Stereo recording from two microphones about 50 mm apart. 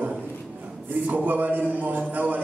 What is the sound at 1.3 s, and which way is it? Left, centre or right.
A man's voice, right.